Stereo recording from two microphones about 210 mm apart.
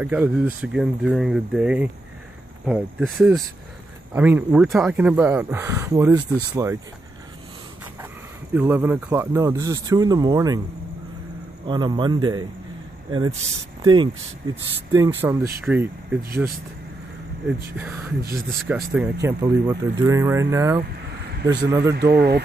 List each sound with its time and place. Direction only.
0.0 s speech: 5° right (ahead or behind)
8.5 s speech: 10° right (ahead or behind)
11.6 s a man's voice: 20° right (ahead or behind)
13.8 s a man's voice: 20° right (ahead or behind)
17.7 s speech: 10° right (ahead or behind)
21.9 s speech: 50° right (ahead or behind)